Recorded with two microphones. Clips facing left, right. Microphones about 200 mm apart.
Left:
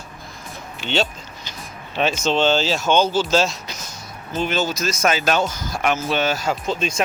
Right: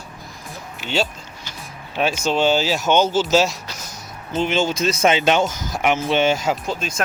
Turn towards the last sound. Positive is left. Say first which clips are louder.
# left 3 dB
turn(degrees=-5)  # may be behind; listen again after turning